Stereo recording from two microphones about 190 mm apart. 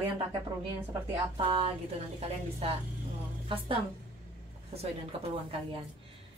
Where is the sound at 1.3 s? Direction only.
30° right (ahead or behind).